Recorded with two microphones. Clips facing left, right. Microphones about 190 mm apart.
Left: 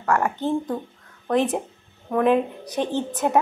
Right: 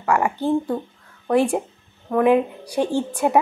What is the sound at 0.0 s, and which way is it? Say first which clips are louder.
A woman's voice: right 2 dB; 10° right (ahead or behind).